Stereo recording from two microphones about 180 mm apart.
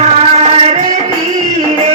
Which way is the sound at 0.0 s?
35° right (ahead or behind).